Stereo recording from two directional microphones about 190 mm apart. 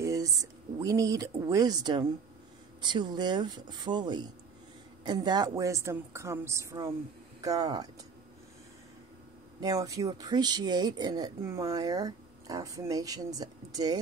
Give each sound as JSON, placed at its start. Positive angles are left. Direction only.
{"t": 0.0, "sound": "a woman's voice", "side_deg": -15}
{"t": 9.6, "sound": "speech", "side_deg": -20}